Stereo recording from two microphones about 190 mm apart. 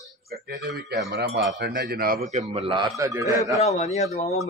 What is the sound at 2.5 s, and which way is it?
Speech, 25° right (ahead or behind).